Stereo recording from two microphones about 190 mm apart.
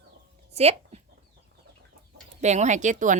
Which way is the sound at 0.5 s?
35° right (ahead or behind).